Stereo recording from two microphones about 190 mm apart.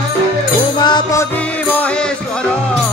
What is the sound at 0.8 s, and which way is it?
Music, 25° left (ahead or behind).